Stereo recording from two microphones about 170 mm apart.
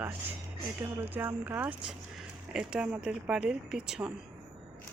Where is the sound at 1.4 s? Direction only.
10° right (ahead or behind).